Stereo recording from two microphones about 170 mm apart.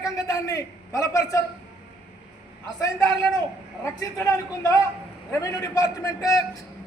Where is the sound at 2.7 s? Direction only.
20° left (ahead or behind).